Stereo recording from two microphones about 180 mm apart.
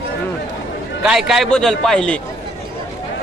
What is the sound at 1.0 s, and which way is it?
A man's voice, centre (ahead or behind).